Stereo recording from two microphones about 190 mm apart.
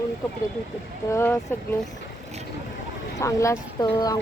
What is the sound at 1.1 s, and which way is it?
Speech, 15° left (ahead or behind).